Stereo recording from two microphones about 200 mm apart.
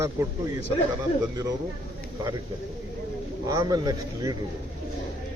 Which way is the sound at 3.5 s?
20° right (ahead or behind).